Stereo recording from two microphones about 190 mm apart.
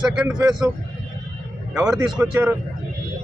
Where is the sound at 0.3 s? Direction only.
5° right (ahead or behind).